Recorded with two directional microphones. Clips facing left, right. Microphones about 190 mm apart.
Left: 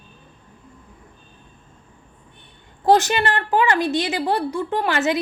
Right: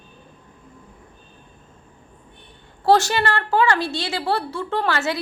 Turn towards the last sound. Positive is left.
turn(degrees=15)  # may be behind; listen again after turning